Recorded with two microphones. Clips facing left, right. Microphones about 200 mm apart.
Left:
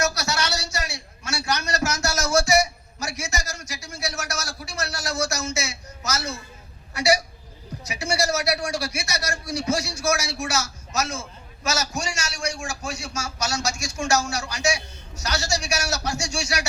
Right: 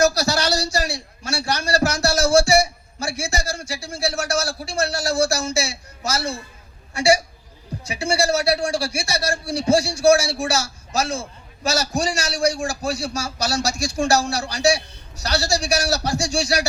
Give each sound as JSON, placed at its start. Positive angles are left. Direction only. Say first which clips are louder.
{"t": 0.0, "sound": "a man's voice", "louder": "right 7 dB", "side_deg": -35}